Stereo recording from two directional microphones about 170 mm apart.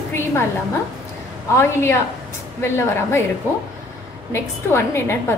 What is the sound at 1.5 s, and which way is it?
Speech, 15° left (ahead or behind).